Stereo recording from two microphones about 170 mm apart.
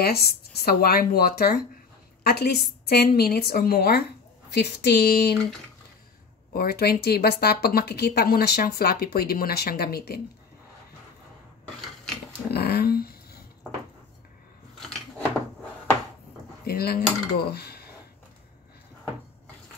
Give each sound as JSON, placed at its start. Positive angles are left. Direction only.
{"t": 0.0, "sound": "speech", "side_deg": 65}
{"t": 6.5, "sound": "speech", "side_deg": 65}
{"t": 12.4, "sound": "a sound", "side_deg": 70}
{"t": 14.8, "sound": "scissors", "side_deg": 0}
{"t": 16.6, "sound": "speech", "side_deg": 65}